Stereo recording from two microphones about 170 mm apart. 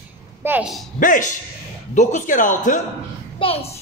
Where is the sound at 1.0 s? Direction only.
50° left (ahead or behind).